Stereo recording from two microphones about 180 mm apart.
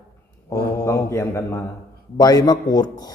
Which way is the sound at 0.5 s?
15° left (ahead or behind).